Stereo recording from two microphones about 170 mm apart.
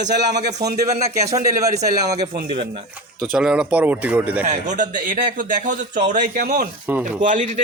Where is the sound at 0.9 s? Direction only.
40° right (ahead or behind).